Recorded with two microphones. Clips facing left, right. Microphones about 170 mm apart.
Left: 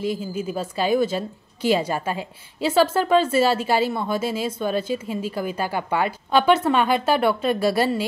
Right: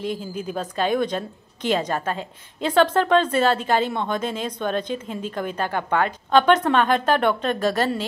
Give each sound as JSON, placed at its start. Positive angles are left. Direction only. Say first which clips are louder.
{"t": 0.0, "sound": "a woman's voice", "louder": "left 2 dB", "side_deg": 5}